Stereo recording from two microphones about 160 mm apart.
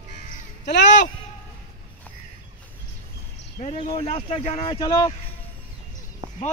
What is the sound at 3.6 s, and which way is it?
Speech, 40° left (ahead or behind).